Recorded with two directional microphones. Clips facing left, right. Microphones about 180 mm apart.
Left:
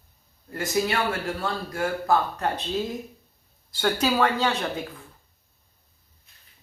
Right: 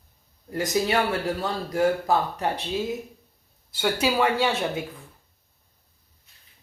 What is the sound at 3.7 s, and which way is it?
Speech, 10° right (ahead or behind).